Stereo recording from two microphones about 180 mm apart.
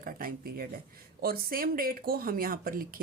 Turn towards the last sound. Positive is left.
turn(degrees=-50)  # may be behind; listen again after turning